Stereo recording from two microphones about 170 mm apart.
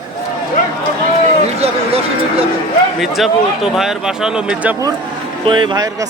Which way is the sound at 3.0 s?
Centre (ahead or behind).